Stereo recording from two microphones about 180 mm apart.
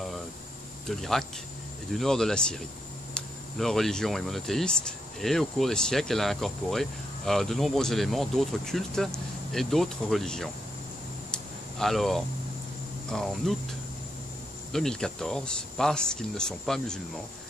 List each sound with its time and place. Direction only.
0.8 s speech: centre (ahead or behind)
11.3 s a sound: centre (ahead or behind)
13.1 s speech: centre (ahead or behind)